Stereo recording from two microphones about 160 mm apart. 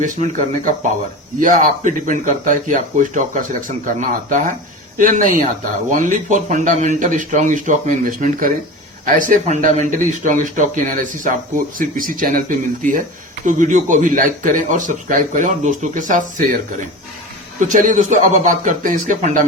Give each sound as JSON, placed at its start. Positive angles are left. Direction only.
{"t": 0.0, "sound": "a man's voice", "side_deg": -50}
{"t": 17.6, "sound": "a man's voice", "side_deg": -55}